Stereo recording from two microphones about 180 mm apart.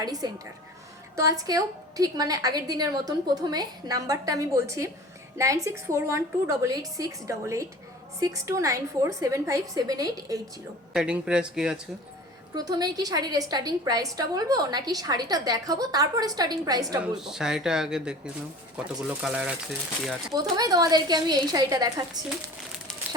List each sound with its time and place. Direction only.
0.0 s a woman's voice: 20° right (ahead or behind)
10.9 s speech: 5° right (ahead or behind)
12.5 s a woman's voice: 20° right (ahead or behind)
17.0 s a woman's voice: 5° right (ahead or behind)
20.3 s a woman's voice: 20° right (ahead or behind)